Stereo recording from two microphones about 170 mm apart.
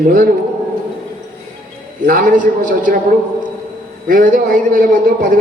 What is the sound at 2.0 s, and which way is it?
Speech, 55° right (ahead or behind).